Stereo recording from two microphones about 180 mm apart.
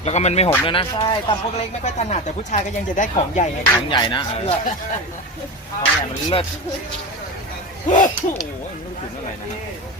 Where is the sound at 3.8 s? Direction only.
25° left (ahead or behind).